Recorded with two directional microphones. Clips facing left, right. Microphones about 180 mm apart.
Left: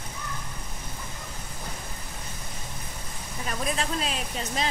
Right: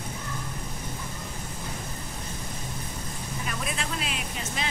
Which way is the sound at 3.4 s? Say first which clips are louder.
Left 5 dB; 35° left (ahead or behind).